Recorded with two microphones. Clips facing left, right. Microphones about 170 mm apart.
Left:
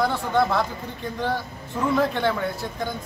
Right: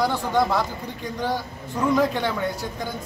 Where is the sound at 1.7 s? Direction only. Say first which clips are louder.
Right 1 dB; centre (ahead or behind).